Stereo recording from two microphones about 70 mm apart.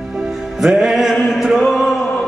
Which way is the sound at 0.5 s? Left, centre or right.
Centre.